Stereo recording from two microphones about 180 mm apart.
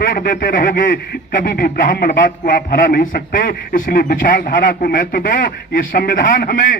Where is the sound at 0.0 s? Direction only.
50° left (ahead or behind).